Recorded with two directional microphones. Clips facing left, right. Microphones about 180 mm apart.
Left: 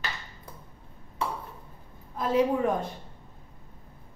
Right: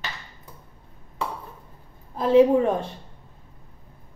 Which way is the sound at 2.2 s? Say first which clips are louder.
Right 8 dB; 30° right (ahead or behind).